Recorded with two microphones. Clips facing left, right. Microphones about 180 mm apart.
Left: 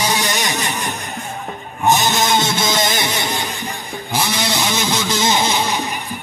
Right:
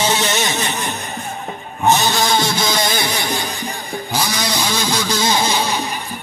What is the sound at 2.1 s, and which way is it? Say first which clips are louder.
Music: even; 20° left (ahead or behind).